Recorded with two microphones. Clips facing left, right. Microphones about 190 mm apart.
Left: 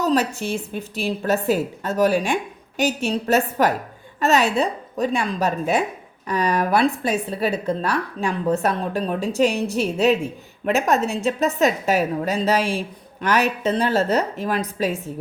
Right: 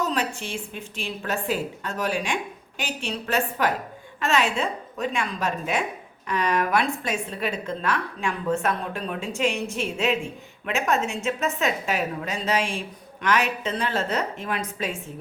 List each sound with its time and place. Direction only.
0.0 s a woman's voice: 40° left (ahead or behind)